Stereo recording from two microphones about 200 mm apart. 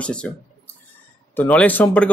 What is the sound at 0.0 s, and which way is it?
Speech, 5° left (ahead or behind).